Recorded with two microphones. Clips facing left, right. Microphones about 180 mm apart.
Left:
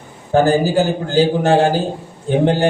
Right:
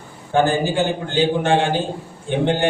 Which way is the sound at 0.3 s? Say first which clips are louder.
Left 4 dB; 40° left (ahead or behind).